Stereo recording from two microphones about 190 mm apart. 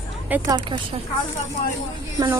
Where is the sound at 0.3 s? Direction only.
10° right (ahead or behind).